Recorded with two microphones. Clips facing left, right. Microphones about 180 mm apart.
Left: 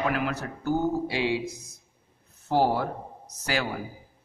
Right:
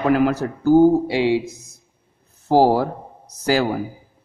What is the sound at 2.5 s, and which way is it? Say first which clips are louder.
Speech: right 9 dB; 35° right (ahead or behind).